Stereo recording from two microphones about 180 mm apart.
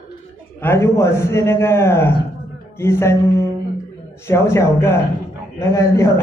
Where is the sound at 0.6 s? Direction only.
15° left (ahead or behind).